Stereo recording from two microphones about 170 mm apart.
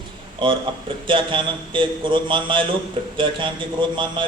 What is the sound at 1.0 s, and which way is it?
A man's voice, 30° right (ahead or behind).